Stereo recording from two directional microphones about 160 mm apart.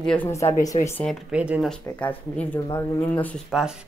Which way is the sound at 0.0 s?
5° left (ahead or behind).